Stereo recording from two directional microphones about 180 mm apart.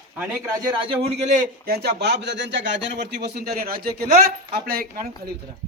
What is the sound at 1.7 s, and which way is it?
Speech, 65° right (ahead or behind).